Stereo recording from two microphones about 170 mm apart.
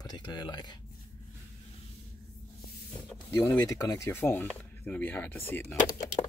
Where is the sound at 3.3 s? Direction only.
20° left (ahead or behind).